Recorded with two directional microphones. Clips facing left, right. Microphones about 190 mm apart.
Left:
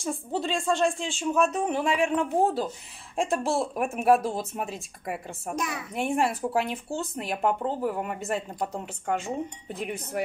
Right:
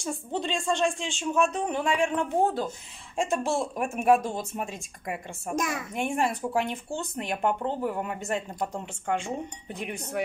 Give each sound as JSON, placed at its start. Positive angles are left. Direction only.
{"t": 0.0, "sound": "speech", "side_deg": 0}
{"t": 5.6, "sound": "a woman's voice", "side_deg": -45}
{"t": 5.9, "sound": "speech", "side_deg": 0}